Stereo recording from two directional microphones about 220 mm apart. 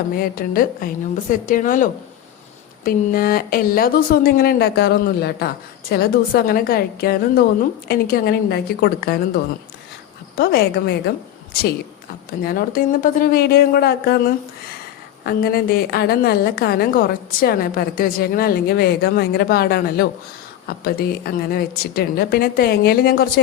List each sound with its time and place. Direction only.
0.1 s a woman's voice: 40° left (ahead or behind)
12.4 s a woman's voice: 40° left (ahead or behind)